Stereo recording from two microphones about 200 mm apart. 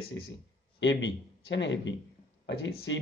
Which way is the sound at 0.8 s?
65° left (ahead or behind).